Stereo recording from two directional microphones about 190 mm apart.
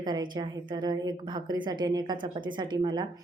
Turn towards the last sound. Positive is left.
turn(degrees=-25)  # may be behind; listen again after turning